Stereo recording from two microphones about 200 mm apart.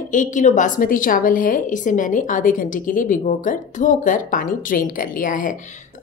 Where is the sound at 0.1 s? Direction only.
40° left (ahead or behind).